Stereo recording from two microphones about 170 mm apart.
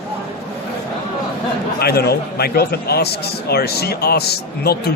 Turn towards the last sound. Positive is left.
turn(degrees=70)  # may be behind; listen again after turning